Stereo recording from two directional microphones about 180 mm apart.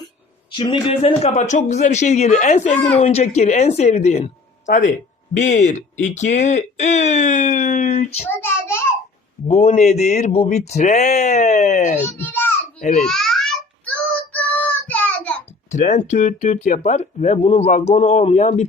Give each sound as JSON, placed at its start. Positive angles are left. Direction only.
{"t": 0.5, "sound": "speech", "side_deg": 25}
{"t": 8.4, "sound": "child singing", "side_deg": 10}
{"t": 9.5, "sound": "speech", "side_deg": 35}
{"t": 12.1, "sound": "babbling", "side_deg": 10}
{"t": 12.8, "sound": "a child's voice", "side_deg": 45}
{"t": 13.1, "sound": "babbling", "side_deg": 0}
{"t": 14.3, "sound": "child singing", "side_deg": 5}
{"t": 15.7, "sound": "speech", "side_deg": 40}